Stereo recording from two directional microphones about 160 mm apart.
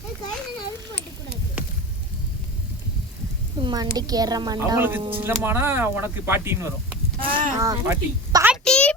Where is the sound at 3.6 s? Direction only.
25° right (ahead or behind).